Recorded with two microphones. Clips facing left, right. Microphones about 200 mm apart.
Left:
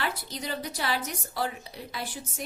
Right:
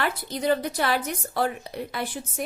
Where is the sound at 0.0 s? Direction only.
55° right (ahead or behind).